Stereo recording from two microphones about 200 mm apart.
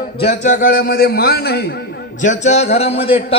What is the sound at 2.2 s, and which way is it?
A man's voice, 35° left (ahead or behind).